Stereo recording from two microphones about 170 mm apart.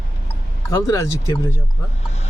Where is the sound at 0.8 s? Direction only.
20° left (ahead or behind).